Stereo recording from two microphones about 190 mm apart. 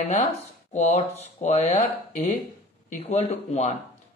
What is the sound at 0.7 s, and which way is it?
Speech, 35° left (ahead or behind).